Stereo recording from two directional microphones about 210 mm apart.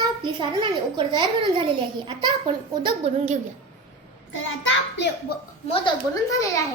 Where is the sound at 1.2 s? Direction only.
25° right (ahead or behind).